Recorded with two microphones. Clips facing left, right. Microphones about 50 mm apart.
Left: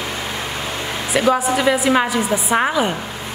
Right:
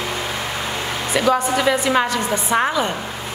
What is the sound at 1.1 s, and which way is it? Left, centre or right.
A woman's voice, centre.